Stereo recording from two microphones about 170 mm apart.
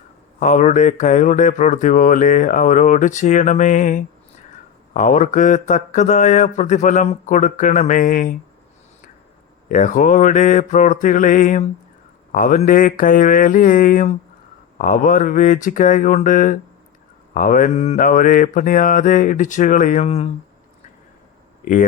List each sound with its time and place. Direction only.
0.3 s speech: 45° left (ahead or behind)
9.6 s speech: 50° left (ahead or behind)
21.6 s speech: 50° left (ahead or behind)